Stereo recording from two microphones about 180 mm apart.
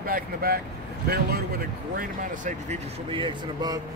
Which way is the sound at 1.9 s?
45° right (ahead or behind).